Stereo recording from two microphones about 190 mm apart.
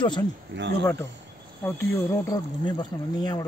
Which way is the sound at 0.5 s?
70° right (ahead or behind).